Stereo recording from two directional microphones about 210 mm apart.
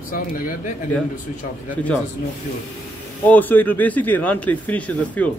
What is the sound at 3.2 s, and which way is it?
Speech, 10° left (ahead or behind).